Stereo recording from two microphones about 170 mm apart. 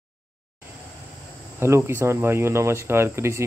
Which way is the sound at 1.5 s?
15° right (ahead or behind).